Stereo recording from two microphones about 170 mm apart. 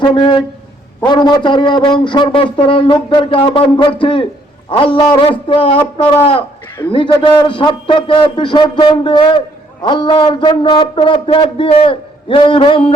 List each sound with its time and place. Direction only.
0.0 s a man's voice: 25° left (ahead or behind)